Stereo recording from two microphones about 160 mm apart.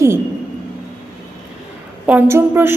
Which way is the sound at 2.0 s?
15° right (ahead or behind).